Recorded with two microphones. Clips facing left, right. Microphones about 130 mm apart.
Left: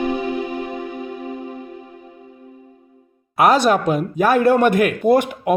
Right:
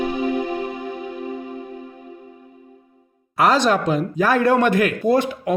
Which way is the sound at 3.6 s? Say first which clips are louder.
Left 2 dB; 50° left (ahead or behind).